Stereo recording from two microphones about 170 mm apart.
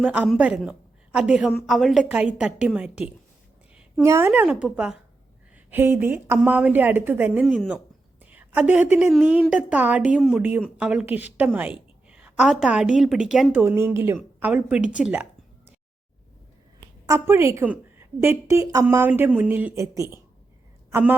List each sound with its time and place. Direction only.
0.0 s a woman's voice: 5° right (ahead or behind)
3.9 s a woman's voice: 15° right (ahead or behind)
17.1 s a woman's voice: 15° right (ahead or behind)